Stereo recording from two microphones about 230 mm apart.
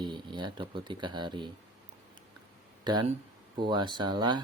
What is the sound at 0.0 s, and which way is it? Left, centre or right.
Speech, centre.